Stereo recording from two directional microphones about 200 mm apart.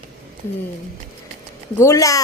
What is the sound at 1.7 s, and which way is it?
Speech, 15° left (ahead or behind).